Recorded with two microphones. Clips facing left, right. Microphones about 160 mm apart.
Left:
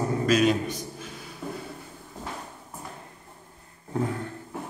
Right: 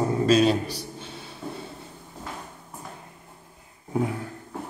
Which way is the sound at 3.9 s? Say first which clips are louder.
Right 2 dB; 10° right (ahead or behind).